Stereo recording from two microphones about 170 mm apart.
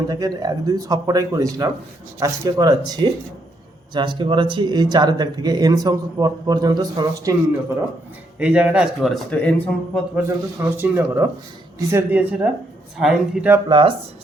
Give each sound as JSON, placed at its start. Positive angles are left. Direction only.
{"t": 0.1, "sound": "speech", "side_deg": -20}
{"t": 8.4, "sound": "speech", "side_deg": -5}
{"t": 10.2, "sound": "speech", "side_deg": -15}
{"t": 13.7, "sound": "speech", "side_deg": -30}